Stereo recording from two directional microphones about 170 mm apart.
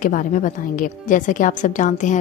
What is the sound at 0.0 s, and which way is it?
A woman's voice, 50° left (ahead or behind).